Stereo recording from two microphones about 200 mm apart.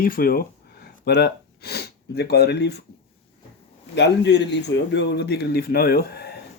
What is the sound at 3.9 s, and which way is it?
Speech, 60° left (ahead or behind).